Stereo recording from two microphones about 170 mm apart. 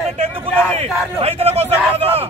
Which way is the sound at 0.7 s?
35° right (ahead or behind).